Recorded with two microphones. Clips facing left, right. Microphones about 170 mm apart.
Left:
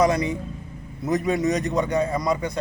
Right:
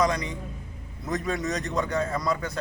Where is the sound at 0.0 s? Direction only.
25° left (ahead or behind).